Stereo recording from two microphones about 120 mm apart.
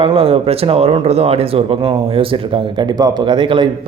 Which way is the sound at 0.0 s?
50° right (ahead or behind).